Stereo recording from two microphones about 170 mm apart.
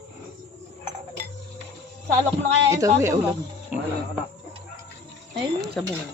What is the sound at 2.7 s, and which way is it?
Speech, 20° right (ahead or behind).